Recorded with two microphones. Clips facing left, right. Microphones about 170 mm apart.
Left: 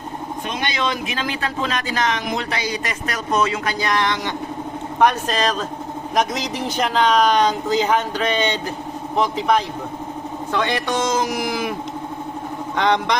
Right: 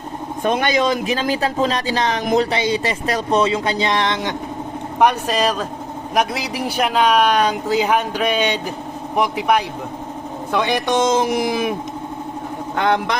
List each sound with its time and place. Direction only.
0.4 s speech: 45° right (ahead or behind); by 4.4 s 20° right (ahead or behind)
4.9 s speech: 10° right (ahead or behind)
12.7 s a man's voice: 5° right (ahead or behind)